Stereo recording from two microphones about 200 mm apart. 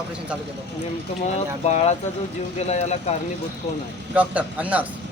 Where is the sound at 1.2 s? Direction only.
35° left (ahead or behind).